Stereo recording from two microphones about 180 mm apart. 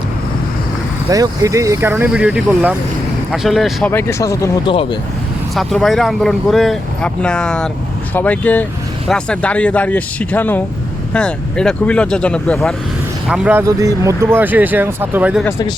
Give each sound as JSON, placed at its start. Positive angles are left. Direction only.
{"t": 1.1, "sound": "speech", "side_deg": -20}
{"t": 3.9, "sound": "speech", "side_deg": 15}
{"t": 4.7, "sound": "speech", "side_deg": 30}
{"t": 5.5, "sound": "speech", "side_deg": 0}
{"t": 15.4, "sound": "speech", "side_deg": 20}